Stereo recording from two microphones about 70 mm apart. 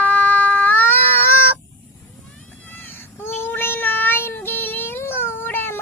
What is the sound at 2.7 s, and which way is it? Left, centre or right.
Child singing, left.